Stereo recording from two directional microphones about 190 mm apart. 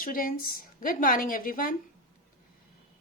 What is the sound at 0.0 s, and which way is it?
Speech, 50° left (ahead or behind).